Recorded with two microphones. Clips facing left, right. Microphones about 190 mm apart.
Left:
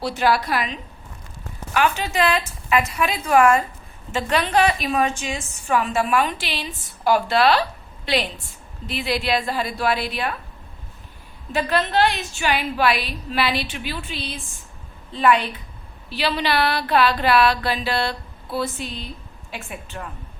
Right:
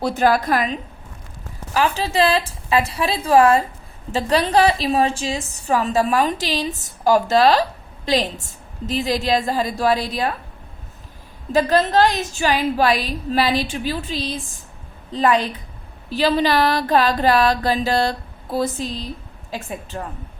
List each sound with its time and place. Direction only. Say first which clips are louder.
0.0 s music: right 3 dB; 50° right (ahead or behind)
1.7 s a woman's voice: right 2 dB; 35° right (ahead or behind)
11.5 s a woman's voice: right 5 dB; 40° right (ahead or behind)
16.1 s music: right 5 dB; 45° right (ahead or behind)
19.5 s a woman's voice: right 5 dB; 35° right (ahead or behind)